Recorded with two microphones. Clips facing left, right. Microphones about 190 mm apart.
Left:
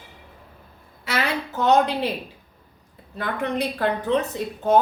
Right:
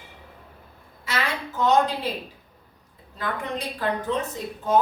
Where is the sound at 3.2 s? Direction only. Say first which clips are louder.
Left 5 dB; 65° left (ahead or behind).